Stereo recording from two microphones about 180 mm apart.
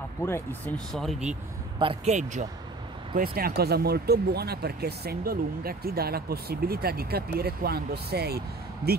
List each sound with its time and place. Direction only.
0.2 s speech: 15° left (ahead or behind)
0.9 s speech: centre (ahead or behind)
1.8 s speech: 30° right (ahead or behind)
3.2 s speech: 55° right (ahead or behind)